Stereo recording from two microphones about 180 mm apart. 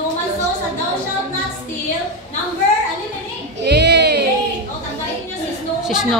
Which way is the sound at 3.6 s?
65° right (ahead or behind).